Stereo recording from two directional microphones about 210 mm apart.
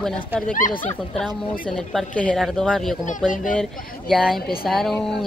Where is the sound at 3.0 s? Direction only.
40° left (ahead or behind).